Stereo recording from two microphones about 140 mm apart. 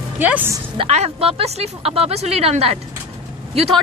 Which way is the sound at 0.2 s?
10° right (ahead or behind).